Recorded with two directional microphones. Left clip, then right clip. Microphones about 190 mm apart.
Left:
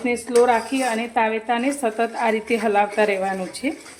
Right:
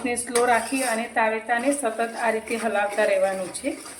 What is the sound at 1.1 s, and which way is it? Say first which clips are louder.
A woman's voice: left 1 dB; 45° left (ahead or behind).